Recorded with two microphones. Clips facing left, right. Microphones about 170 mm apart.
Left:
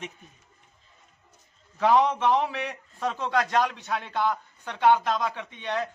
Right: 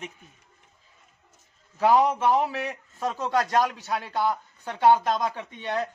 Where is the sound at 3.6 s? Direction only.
40° right (ahead or behind).